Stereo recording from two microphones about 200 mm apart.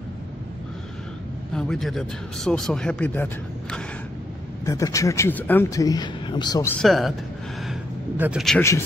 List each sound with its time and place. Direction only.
1.5 s speech: 5° left (ahead or behind)
4.6 s speech: 15° left (ahead or behind)
8.2 s speech: 5° right (ahead or behind)
8.5 s speech: 15° left (ahead or behind)